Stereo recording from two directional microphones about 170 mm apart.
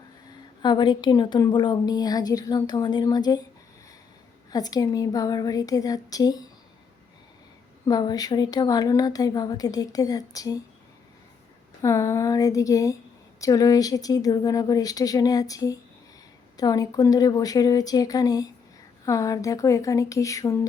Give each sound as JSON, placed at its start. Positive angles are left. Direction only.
{"t": 0.6, "sound": "a woman's voice", "side_deg": 25}
{"t": 4.5, "sound": "a woman's voice", "side_deg": 20}
{"t": 7.9, "sound": "a woman's voice", "side_deg": 25}
{"t": 11.8, "sound": "a woman's voice", "side_deg": 20}